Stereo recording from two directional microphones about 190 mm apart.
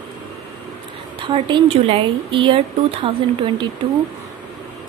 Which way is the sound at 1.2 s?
25° right (ahead or behind).